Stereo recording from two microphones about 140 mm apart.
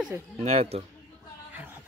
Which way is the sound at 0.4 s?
45° right (ahead or behind).